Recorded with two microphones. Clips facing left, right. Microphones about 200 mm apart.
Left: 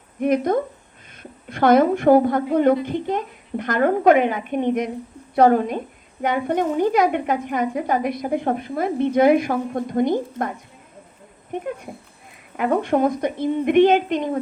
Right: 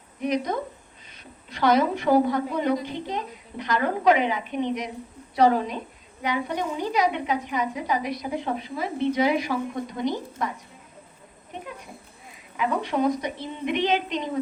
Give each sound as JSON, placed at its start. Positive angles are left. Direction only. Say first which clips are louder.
{"t": 0.2, "sound": "a woman's voice", "louder": "left 7 dB", "side_deg": 55}
{"t": 11.5, "sound": "a woman's voice", "louder": "left 10 dB", "side_deg": 55}